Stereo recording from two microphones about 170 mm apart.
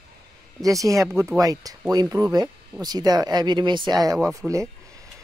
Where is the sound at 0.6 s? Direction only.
20° right (ahead or behind).